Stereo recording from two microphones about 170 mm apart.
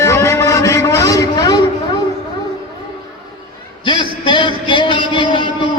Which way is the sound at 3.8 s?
30° left (ahead or behind).